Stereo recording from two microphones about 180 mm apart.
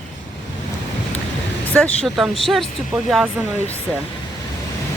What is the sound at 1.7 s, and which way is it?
Speech, 5° left (ahead or behind).